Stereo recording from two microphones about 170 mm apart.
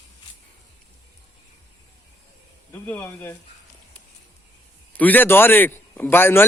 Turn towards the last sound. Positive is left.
turn(degrees=15)  # may be behind; listen again after turning